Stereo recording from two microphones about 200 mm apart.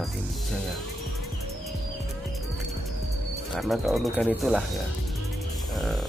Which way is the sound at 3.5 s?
Centre (ahead or behind).